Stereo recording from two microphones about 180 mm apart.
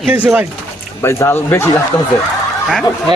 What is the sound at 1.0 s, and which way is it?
Speech, 15° left (ahead or behind).